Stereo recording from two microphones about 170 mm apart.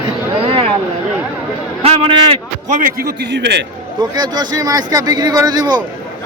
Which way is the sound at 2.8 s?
65° right (ahead or behind).